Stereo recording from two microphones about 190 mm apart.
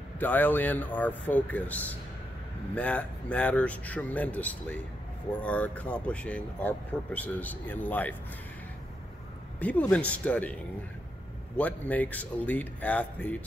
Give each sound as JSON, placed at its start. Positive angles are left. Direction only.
{"t": 0.2, "sound": "speech", "side_deg": 10}
{"t": 9.6, "sound": "speech", "side_deg": 10}